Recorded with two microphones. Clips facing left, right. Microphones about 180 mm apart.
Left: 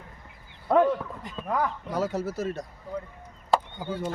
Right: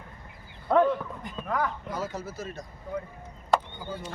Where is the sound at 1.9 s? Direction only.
70° left (ahead or behind).